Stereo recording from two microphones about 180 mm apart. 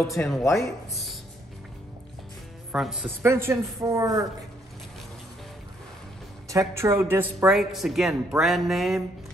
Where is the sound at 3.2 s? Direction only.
15° right (ahead or behind).